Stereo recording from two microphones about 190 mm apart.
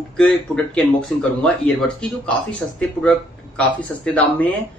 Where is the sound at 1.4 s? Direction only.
5° left (ahead or behind).